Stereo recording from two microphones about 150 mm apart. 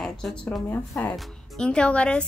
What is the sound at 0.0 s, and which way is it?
A woman's voice, 5° left (ahead or behind).